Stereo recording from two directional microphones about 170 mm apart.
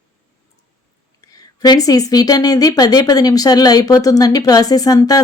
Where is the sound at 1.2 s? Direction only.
20° left (ahead or behind).